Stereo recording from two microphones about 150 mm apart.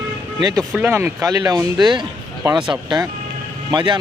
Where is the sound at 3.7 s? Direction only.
30° right (ahead or behind).